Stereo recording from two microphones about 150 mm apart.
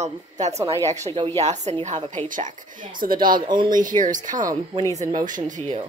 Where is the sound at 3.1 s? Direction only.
30° right (ahead or behind).